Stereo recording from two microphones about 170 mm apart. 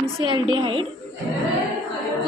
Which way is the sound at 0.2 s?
30° right (ahead or behind).